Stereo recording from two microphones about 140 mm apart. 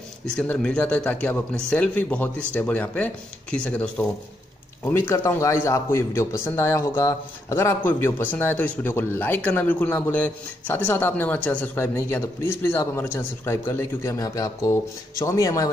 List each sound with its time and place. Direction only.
0.2 s a man's voice: 5° left (ahead or behind); by 15.7 s 25° left (ahead or behind)